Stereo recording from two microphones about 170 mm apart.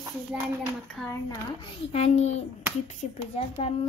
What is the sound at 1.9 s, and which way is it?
A child's voice, 40° left (ahead or behind).